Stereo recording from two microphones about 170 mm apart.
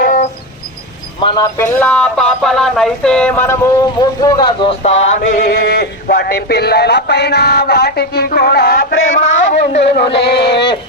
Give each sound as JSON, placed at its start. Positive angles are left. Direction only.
{"t": 0.0, "sound": "music", "side_deg": 50}
{"t": 1.2, "sound": "a man's voice", "side_deg": 25}
{"t": 1.5, "sound": "speech", "side_deg": 15}
{"t": 4.8, "sound": "mantra", "side_deg": 40}
{"t": 5.5, "sound": "a sound", "side_deg": 65}
{"t": 10.2, "sound": "a sound", "side_deg": 75}